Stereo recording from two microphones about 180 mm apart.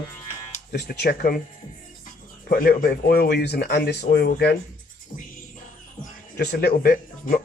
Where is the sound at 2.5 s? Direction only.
55° left (ahead or behind).